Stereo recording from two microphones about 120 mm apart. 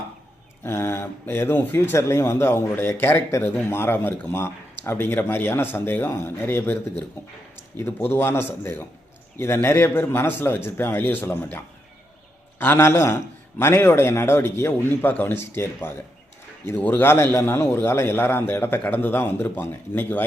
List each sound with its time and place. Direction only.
0.6 s a man's voice: 20° left (ahead or behind)